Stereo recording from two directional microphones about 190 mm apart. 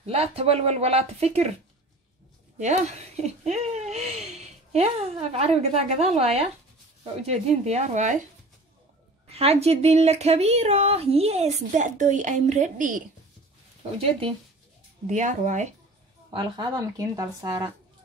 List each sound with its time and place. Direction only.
0.0 s speech: 30° right (ahead or behind)
2.6 s speech: 40° right (ahead or behind)
9.4 s speech: 35° right (ahead or behind)
15.0 s speech: 40° right (ahead or behind)
16.3 s speech: 20° right (ahead or behind)